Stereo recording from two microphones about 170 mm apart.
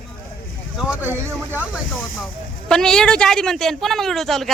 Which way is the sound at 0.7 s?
10° right (ahead or behind).